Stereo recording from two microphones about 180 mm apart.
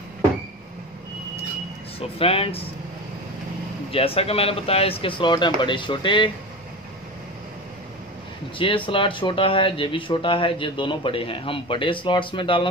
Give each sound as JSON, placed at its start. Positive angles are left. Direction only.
{"t": 2.0, "sound": "speech", "side_deg": 30}
{"t": 3.9, "sound": "speech", "side_deg": 30}
{"t": 8.5, "sound": "speech", "side_deg": 30}